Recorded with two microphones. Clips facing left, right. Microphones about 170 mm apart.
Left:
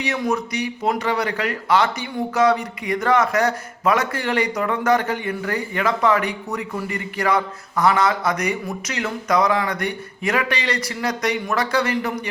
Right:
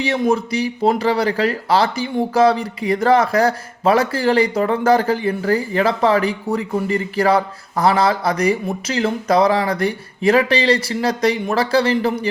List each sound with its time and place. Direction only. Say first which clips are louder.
0.0 s speech: right 5 dB; 30° right (ahead or behind)